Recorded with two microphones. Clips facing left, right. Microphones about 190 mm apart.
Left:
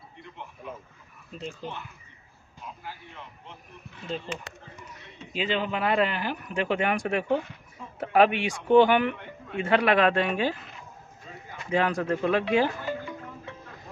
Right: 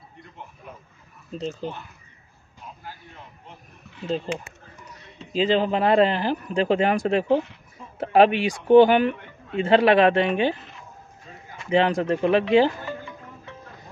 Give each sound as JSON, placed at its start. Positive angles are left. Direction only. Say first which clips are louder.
{"t": 1.3, "sound": "speech", "louder": "right 6 dB", "side_deg": -40}
{"t": 4.3, "sound": "speech", "louder": "right 6 dB", "side_deg": -40}
{"t": 11.7, "sound": "speech", "louder": "right 5 dB", "side_deg": -25}